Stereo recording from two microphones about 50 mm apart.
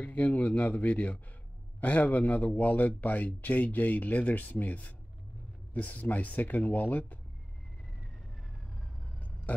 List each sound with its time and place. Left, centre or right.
0.0 s speech: left